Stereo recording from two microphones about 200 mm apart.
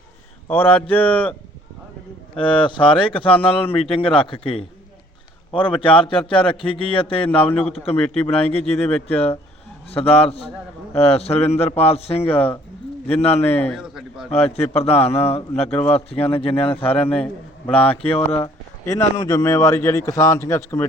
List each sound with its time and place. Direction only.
0.4 s a man's voice: 10° left (ahead or behind)
2.3 s a man's voice: 25° left (ahead or behind)
5.5 s a man's voice: 5° left (ahead or behind)
5.8 s a man's voice: 25° left (ahead or behind)
13.5 s a man's voice: 10° left (ahead or behind)
13.7 s speech: centre (ahead or behind)
14.3 s a man's voice: 30° left (ahead or behind); by 20.8 s 15° left (ahead or behind)